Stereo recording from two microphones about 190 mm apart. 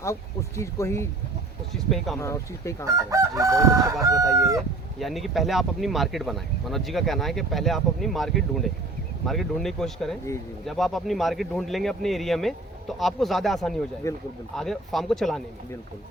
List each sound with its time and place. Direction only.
0.0 s speech: 15° left (ahead or behind)
1.7 s speech: centre (ahead or behind)
2.1 s speech: 15° left (ahead or behind)
2.8 s chicken: 15° right (ahead or behind)
4.9 s speech: centre (ahead or behind)
14.0 s speech: 15° left (ahead or behind)
14.5 s speech: centre (ahead or behind)